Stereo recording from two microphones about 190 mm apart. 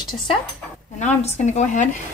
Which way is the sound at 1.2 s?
40° left (ahead or behind).